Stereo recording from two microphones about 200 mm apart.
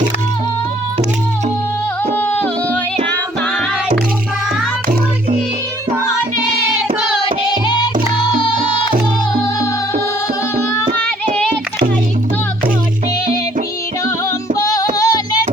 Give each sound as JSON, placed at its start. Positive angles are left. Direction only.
{"t": 14.7, "sound": "child singing", "side_deg": 20}